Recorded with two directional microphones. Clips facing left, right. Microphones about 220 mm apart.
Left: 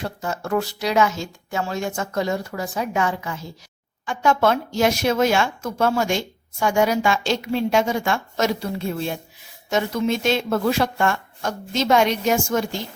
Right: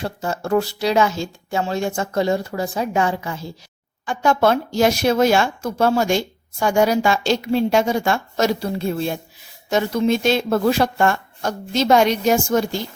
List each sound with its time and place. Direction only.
0.0 s speech: 30° right (ahead or behind)